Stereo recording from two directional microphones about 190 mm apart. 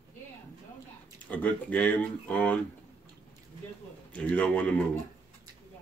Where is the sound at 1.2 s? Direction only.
5° left (ahead or behind).